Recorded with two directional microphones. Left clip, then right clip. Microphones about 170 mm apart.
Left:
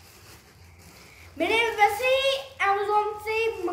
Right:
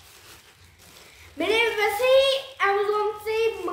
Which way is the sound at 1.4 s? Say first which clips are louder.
Left 1 dB; 20° right (ahead or behind).